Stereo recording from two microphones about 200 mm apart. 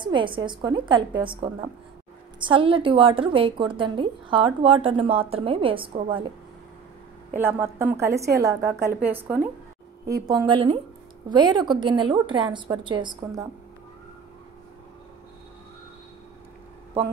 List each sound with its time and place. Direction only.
0.0 s a woman's voice: 25° right (ahead or behind)
7.3 s a woman's voice: 10° right (ahead or behind)